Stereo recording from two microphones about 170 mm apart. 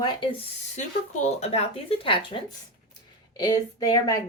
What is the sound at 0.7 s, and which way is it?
A woman's voice, 45° left (ahead or behind).